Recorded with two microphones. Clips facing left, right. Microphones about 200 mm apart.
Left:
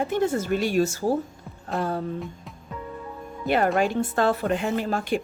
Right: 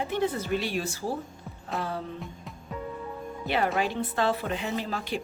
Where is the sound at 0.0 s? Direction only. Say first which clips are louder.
Left 4 dB; 45° left (ahead or behind).